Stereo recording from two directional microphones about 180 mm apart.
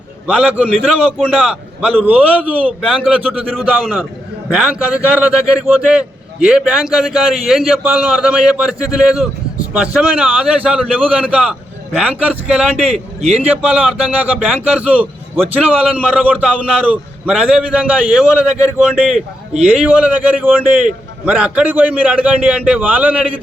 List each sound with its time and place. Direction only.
0.3 s a man's voice: 5° right (ahead or behind)
12.9 s a man's voice: 40° right (ahead or behind)
13.4 s a man's voice: 5° right (ahead or behind)